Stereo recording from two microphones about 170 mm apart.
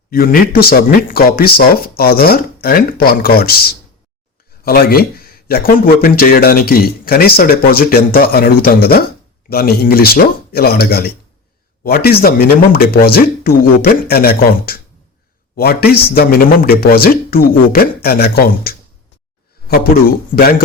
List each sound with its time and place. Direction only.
0.1 s a man's voice: 60° left (ahead or behind)